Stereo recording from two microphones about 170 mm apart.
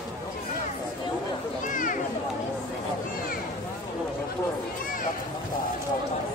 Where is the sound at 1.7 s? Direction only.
50° left (ahead or behind).